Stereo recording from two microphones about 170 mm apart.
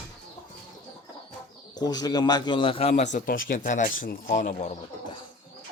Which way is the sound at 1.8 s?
25° left (ahead or behind).